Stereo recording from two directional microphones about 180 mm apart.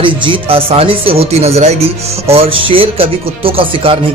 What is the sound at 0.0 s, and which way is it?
Speech, 30° right (ahead or behind).